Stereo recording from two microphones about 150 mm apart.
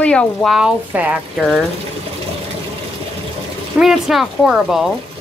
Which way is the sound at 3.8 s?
Centre (ahead or behind).